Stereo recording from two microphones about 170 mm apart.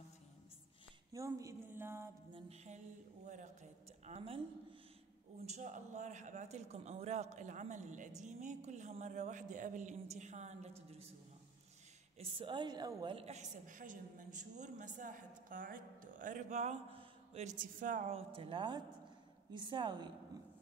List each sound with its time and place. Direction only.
1.1 s a sound: 20° right (ahead or behind)
2.3 s music: 40° right (ahead or behind)
4.0 s a woman's voice: 35° right (ahead or behind)
5.4 s a woman's voice: 45° right (ahead or behind)
12.2 s a woman's voice: 30° right (ahead or behind)